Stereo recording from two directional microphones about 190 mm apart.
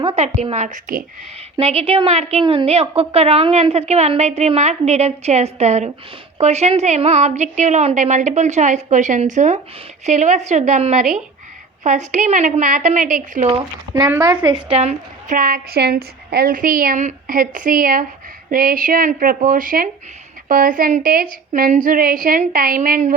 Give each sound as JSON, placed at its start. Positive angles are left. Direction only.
{"t": 0.0, "sound": "a woman's voice", "side_deg": -30}
{"t": 1.5, "sound": "a woman's voice", "side_deg": -30}
{"t": 13.9, "sound": "a woman's voice", "side_deg": -20}